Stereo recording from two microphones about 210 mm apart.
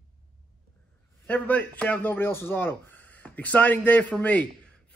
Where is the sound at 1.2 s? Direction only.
10° left (ahead or behind).